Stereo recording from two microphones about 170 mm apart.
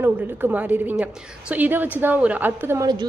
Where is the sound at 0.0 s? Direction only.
10° right (ahead or behind).